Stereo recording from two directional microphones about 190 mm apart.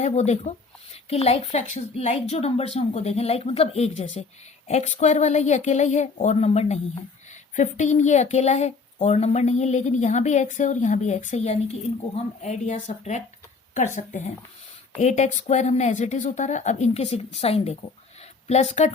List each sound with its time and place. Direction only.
0.0 s speech: 35° left (ahead or behind)